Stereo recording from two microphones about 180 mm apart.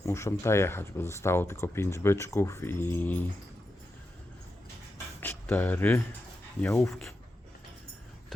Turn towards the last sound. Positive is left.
turn(degrees=5)  # may be behind; listen again after turning